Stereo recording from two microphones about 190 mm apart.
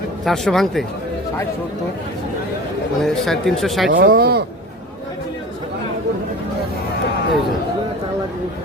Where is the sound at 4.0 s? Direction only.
55° right (ahead or behind).